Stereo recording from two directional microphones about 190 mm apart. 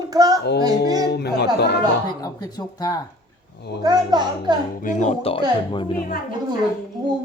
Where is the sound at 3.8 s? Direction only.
20° right (ahead or behind).